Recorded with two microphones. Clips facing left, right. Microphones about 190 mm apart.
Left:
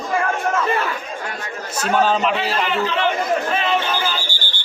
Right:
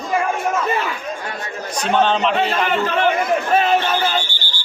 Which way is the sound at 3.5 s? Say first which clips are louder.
Right 4 dB; 45° right (ahead or behind).